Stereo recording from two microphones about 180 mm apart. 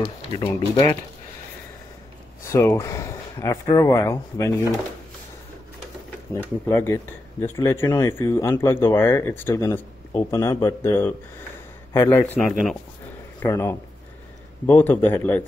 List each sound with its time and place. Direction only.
0.0 s speech: 30° left (ahead or behind)
2.4 s speech: 15° left (ahead or behind)
6.7 s speech: 15° left (ahead or behind)
12.4 s speech: centre (ahead or behind)
13.4 s speech: 15° left (ahead or behind)